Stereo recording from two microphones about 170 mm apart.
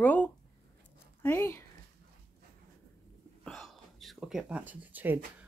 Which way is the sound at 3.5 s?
Centre (ahead or behind).